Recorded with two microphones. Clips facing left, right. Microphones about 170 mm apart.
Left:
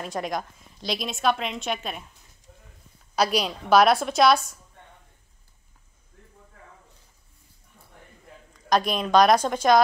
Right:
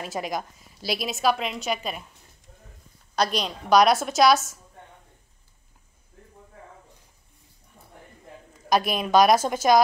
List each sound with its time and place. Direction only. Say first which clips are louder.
0.0 s a woman's voice: even; centre (ahead or behind)
3.2 s a woman's voice: left 2 dB; 5° left (ahead or behind)
8.6 s a woman's voice: even; 5° right (ahead or behind)